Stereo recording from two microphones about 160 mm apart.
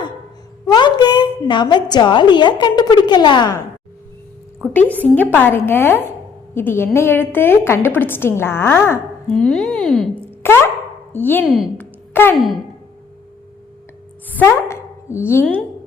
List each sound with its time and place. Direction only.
0.6 s a woman's voice: 25° left (ahead or behind)
4.7 s a woman's voice: 10° left (ahead or behind)
9.3 s speech: 5° left (ahead or behind)
10.4 s a woman's voice: 15° left (ahead or behind)
11.4 s speech: 5° right (ahead or behind)
11.8 s a sound: 15° left (ahead or behind)
14.3 s a woman's voice: 15° left (ahead or behind)